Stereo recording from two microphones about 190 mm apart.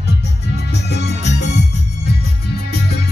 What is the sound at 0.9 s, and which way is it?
Music, 65° left (ahead or behind).